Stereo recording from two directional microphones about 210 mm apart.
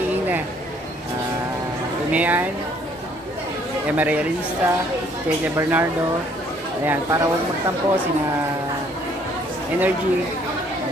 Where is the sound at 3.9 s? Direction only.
5° right (ahead or behind).